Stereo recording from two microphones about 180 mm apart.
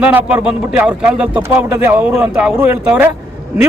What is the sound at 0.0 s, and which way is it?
Speech, 10° right (ahead or behind).